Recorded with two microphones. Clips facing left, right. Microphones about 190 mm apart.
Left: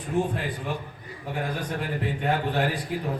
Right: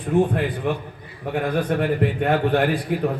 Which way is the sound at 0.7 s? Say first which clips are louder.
Right 7 dB; 60° right (ahead or behind).